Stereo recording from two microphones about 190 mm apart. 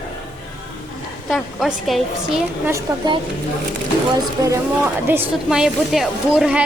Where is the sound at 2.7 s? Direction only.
25° right (ahead or behind).